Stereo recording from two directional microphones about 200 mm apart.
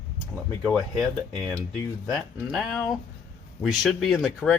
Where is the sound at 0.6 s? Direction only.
5° left (ahead or behind).